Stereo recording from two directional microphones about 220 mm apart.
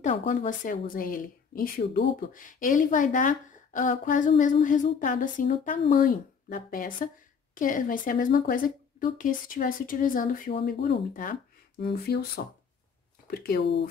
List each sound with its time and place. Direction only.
0.3 s a woman's voice: 35° left (ahead or behind)
13.3 s speech: 45° left (ahead or behind)